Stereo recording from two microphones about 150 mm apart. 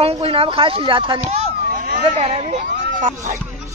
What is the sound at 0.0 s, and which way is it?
Speech, 40° right (ahead or behind).